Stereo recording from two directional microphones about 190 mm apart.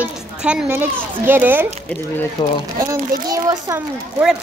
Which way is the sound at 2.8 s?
20° right (ahead or behind).